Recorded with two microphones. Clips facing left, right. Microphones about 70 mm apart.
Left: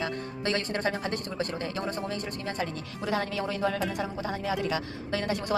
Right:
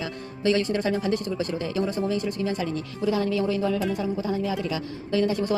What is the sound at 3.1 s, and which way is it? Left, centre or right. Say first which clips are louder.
A woman's voice: right 6 dB; left.